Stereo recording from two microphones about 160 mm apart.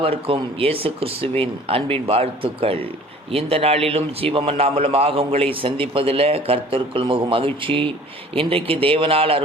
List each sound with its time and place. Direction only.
0.0 s a man's voice: 35° right (ahead or behind)